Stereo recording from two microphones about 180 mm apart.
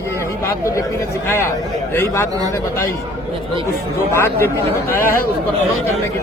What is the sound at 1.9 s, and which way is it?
Speech, 15° left (ahead or behind).